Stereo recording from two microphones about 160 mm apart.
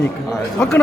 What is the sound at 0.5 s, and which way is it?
Speech, 5° left (ahead or behind).